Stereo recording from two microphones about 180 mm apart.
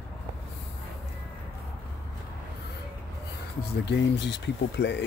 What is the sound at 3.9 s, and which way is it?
Speech, 70° left (ahead or behind).